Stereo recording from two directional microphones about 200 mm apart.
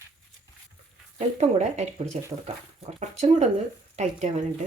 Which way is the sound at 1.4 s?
35° right (ahead or behind).